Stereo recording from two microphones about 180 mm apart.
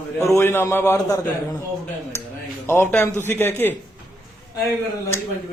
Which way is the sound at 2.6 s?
15° left (ahead or behind).